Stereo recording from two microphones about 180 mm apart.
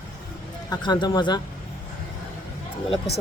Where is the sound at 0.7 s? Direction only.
25° left (ahead or behind).